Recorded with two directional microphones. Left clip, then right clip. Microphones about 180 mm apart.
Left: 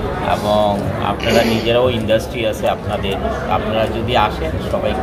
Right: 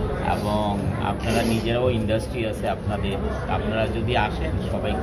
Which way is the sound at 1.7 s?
Centre (ahead or behind).